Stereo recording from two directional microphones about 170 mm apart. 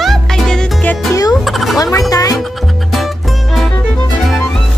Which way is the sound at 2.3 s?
Centre (ahead or behind).